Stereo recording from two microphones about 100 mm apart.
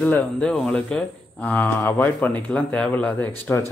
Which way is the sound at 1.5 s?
20° left (ahead or behind).